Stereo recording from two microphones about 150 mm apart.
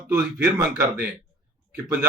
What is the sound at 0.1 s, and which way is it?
Speech, 10° right (ahead or behind).